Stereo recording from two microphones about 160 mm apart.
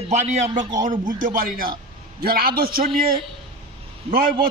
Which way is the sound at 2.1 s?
70° right (ahead or behind).